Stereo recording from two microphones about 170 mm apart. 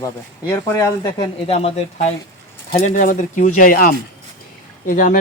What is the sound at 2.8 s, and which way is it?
Speech, 50° left (ahead or behind).